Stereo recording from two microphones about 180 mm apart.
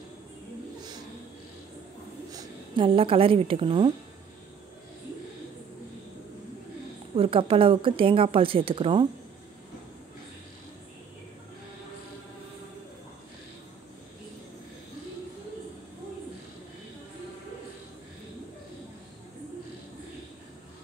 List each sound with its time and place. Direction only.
0.7 s a sound: 20° right (ahead or behind)
2.3 s a woman's voice: 25° right (ahead or behind)
7.2 s speech: 30° right (ahead or behind)